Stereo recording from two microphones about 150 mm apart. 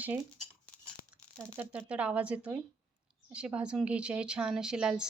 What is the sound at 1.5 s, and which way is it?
A woman's voice, 15° right (ahead or behind).